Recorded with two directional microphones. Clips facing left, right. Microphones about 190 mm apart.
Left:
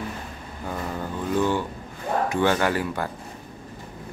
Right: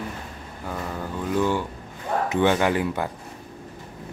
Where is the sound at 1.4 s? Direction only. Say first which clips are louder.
Even; 10° right (ahead or behind).